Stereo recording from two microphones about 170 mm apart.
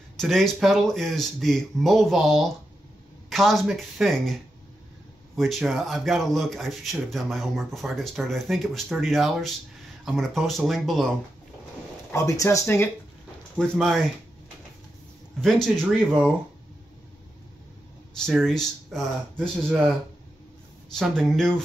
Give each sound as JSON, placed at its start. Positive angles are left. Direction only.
{"t": 0.2, "sound": "speech", "side_deg": 0}
{"t": 12.1, "sound": "speech", "side_deg": 20}
{"t": 13.6, "sound": "speech", "side_deg": 0}
{"t": 15.4, "sound": "speech", "side_deg": 0}
{"t": 18.1, "sound": "speech", "side_deg": 5}
{"t": 20.9, "sound": "speech", "side_deg": 0}